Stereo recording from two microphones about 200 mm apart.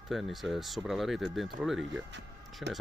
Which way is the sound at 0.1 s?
Centre (ahead or behind).